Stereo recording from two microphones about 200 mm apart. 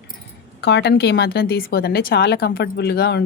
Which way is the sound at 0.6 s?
60° left (ahead or behind).